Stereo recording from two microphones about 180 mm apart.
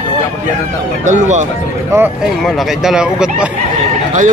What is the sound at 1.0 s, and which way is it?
Speech, 40° right (ahead or behind).